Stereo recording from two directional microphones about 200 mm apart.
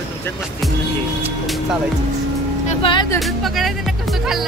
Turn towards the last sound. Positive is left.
turn(degrees=0)  # may be behind; listen again after turning